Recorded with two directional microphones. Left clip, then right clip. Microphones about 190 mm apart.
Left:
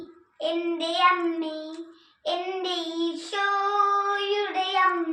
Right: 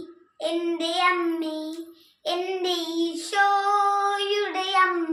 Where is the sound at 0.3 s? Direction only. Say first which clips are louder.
Right 1 dB; 10° right (ahead or behind).